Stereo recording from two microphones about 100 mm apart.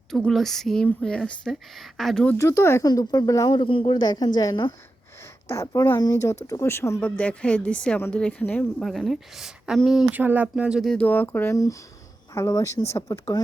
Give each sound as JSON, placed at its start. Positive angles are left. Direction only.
{"t": 0.1, "sound": "speech", "side_deg": 5}
{"t": 2.4, "sound": "speech", "side_deg": 25}
{"t": 2.8, "sound": "speech", "side_deg": 40}
{"t": 3.5, "sound": "speech", "side_deg": 55}
{"t": 5.5, "sound": "speech", "side_deg": 30}
{"t": 7.0, "sound": "speech", "side_deg": 10}
{"t": 8.8, "sound": "speech", "side_deg": 0}
{"t": 10.1, "sound": "speech", "side_deg": -15}
{"t": 10.8, "sound": "speech", "side_deg": 15}
{"t": 11.5, "sound": "speech", "side_deg": 35}